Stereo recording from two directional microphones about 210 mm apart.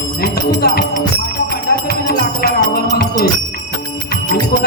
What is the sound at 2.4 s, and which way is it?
Music, 45° left (ahead or behind).